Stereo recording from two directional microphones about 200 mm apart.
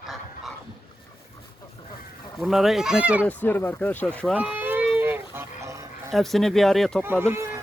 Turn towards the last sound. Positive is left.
turn(degrees=-15)  # may be behind; listen again after turning